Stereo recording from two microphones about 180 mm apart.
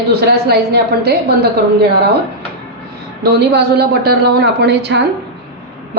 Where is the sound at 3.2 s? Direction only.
65° right (ahead or behind).